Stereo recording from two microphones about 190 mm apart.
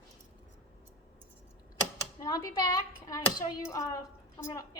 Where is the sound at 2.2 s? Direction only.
20° left (ahead or behind).